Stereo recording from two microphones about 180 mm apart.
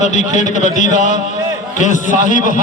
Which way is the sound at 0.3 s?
45° left (ahead or behind).